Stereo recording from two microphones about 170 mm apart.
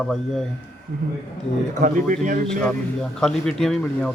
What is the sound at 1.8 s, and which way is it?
Speech, 50° right (ahead or behind).